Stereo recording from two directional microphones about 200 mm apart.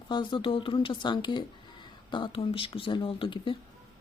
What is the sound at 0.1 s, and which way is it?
Speech, 25° left (ahead or behind).